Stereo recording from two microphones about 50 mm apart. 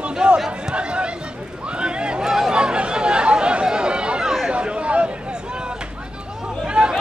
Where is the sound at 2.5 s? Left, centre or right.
Centre.